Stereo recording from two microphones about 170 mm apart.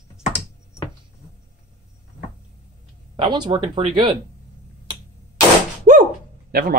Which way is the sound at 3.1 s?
25° right (ahead or behind).